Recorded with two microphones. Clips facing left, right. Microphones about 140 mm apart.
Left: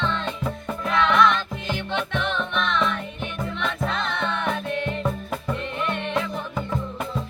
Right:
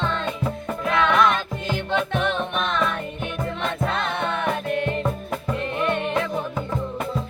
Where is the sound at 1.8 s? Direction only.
45° right (ahead or behind).